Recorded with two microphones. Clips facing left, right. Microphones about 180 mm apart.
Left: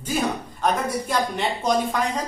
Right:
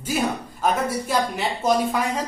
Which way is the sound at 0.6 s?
5° right (ahead or behind).